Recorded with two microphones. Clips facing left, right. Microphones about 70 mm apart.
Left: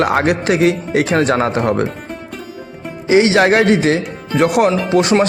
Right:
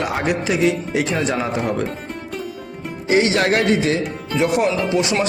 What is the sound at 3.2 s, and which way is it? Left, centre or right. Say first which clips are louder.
Speech: left 6 dB; left.